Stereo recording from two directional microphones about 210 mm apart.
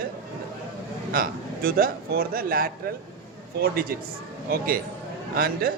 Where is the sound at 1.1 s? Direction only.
45° right (ahead or behind).